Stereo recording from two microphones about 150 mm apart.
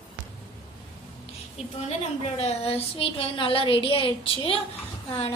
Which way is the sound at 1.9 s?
45° left (ahead or behind).